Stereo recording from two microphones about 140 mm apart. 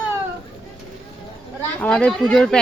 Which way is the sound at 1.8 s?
5° left (ahead or behind).